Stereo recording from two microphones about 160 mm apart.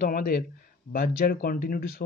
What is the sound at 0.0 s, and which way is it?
Speech, 70° left (ahead or behind).